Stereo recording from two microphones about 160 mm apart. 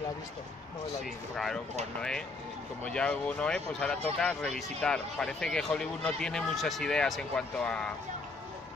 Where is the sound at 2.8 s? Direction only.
5° left (ahead or behind).